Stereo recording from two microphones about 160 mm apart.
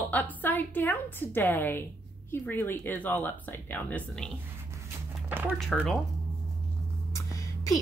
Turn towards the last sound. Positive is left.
turn(degrees=20)  # may be behind; listen again after turning